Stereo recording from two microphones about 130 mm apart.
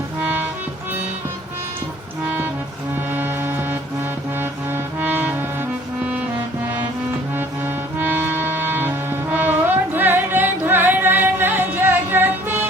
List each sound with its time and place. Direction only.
0.2 s music: 15° right (ahead or behind)
2.2 s music: 15° right (ahead or behind)
7.9 s music: 15° right (ahead or behind)